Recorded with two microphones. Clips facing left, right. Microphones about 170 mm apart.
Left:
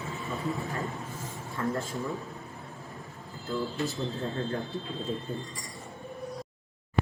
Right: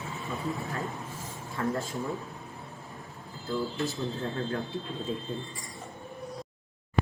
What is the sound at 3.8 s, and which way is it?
Speech, centre (ahead or behind).